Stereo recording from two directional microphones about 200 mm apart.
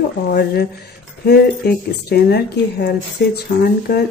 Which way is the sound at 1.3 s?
50° left (ahead or behind).